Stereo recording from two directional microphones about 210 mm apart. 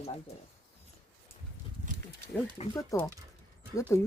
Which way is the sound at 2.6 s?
30° left (ahead or behind).